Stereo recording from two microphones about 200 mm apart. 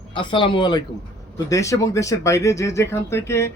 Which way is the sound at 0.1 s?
25° left (ahead or behind).